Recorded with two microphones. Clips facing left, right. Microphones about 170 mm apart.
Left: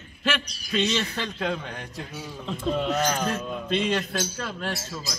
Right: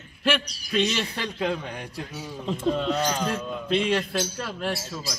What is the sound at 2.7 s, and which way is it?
Speech, 5° left (ahead or behind).